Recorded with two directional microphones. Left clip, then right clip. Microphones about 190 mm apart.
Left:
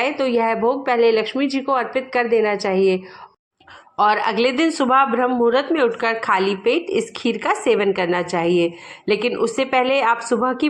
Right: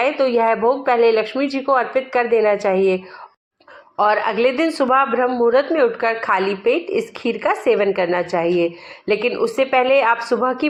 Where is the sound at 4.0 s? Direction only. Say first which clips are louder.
Right 1 dB; 30° left (ahead or behind).